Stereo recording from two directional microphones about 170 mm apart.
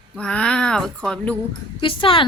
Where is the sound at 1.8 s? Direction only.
30° left (ahead or behind).